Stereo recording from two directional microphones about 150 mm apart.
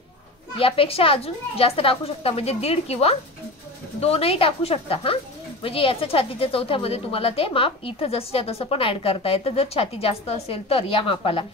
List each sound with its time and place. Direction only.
0.6 s speech: 40° left (ahead or behind)